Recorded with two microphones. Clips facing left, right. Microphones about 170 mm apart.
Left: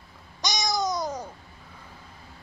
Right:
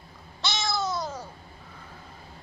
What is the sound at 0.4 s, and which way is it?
Babbling, 15° left (ahead or behind).